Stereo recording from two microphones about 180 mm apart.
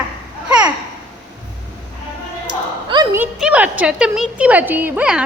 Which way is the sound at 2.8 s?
25° right (ahead or behind).